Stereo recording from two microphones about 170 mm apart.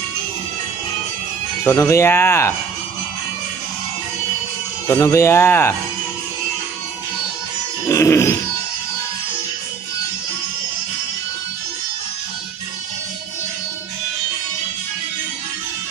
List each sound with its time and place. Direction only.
1.6 s speech: 15° left (ahead or behind)
4.8 s speech: 15° left (ahead or behind)
7.9 s grunt: 15° left (ahead or behind)